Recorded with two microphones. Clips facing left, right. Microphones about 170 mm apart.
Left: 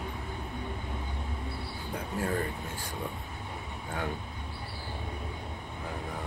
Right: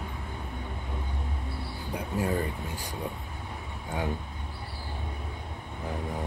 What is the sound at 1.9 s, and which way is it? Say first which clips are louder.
Speech: right 3 dB; 15° right (ahead or behind).